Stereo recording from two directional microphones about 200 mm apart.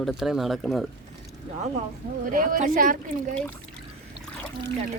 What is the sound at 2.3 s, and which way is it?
Speech, 45° right (ahead or behind).